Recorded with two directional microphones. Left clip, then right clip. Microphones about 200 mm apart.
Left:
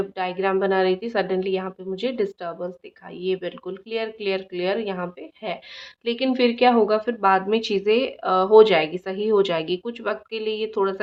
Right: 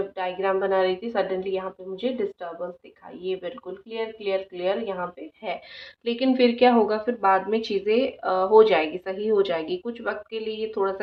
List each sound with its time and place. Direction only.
0.2 s a woman's voice: 40° left (ahead or behind)